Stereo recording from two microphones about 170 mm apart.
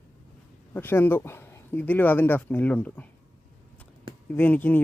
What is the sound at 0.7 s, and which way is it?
Speech, 10° left (ahead or behind).